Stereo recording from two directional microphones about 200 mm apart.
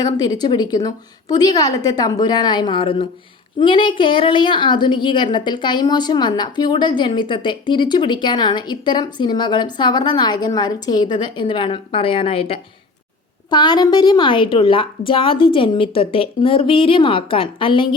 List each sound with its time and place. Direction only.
0.0 s a woman's voice: 20° left (ahead or behind)